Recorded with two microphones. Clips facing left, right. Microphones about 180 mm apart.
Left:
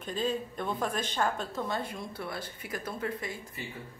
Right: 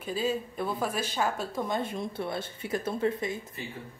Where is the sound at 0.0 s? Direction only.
5° right (ahead or behind); by 3.3 s 25° right (ahead or behind).